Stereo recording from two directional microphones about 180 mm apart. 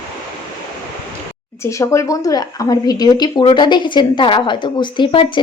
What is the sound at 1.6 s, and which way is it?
Speech, 15° left (ahead or behind).